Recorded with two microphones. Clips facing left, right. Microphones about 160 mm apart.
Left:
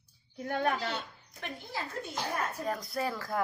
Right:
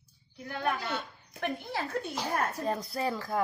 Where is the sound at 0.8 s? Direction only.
55° right (ahead or behind).